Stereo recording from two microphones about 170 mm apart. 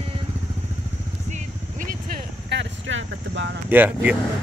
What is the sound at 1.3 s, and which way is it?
Vehicle, 50° right (ahead or behind).